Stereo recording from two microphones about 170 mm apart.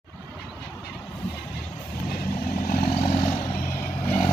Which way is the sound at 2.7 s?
55° left (ahead or behind).